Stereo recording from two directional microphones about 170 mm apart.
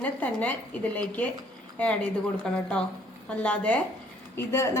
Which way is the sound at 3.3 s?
10° left (ahead or behind).